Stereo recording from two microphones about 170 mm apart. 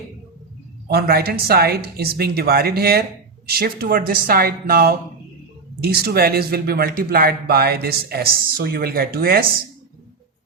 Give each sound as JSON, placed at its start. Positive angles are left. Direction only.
{"t": 0.9, "sound": "speech", "side_deg": -65}